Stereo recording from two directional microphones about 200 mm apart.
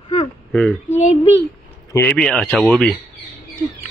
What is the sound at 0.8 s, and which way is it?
Speech, 35° left (ahead or behind).